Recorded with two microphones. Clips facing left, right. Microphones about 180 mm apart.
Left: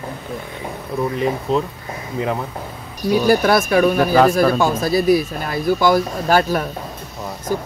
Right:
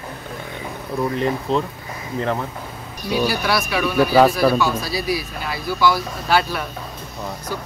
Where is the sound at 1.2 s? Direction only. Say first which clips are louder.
Left 2 dB; 5° left (ahead or behind).